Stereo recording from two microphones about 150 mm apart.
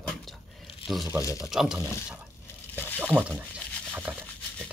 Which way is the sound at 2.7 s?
15° left (ahead or behind).